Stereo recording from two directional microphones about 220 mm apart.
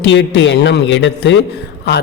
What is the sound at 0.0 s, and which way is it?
Speech, 55° left (ahead or behind).